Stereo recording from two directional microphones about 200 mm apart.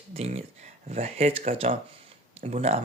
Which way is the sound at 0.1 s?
30° right (ahead or behind).